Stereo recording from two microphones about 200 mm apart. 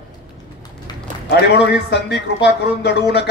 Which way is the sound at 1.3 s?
55° left (ahead or behind).